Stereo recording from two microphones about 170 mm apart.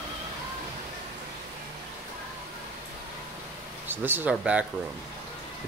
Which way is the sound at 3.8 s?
10° right (ahead or behind).